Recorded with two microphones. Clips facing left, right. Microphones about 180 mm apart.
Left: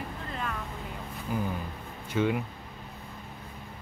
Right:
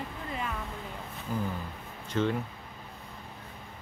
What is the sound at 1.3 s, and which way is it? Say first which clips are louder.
Speech: left 2 dB; 10° left (ahead or behind).